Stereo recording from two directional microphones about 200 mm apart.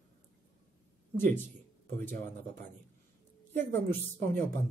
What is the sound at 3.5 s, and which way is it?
Speech, 10° left (ahead or behind).